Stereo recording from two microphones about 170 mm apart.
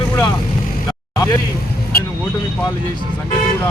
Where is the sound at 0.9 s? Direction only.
20° left (ahead or behind).